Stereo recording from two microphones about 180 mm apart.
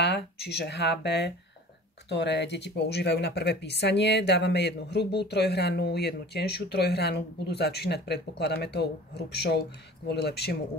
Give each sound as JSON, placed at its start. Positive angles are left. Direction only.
{"t": 0.0, "sound": "speech", "side_deg": 65}